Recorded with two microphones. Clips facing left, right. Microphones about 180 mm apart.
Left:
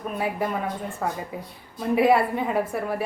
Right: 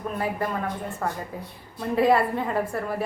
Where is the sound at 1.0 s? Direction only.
10° left (ahead or behind).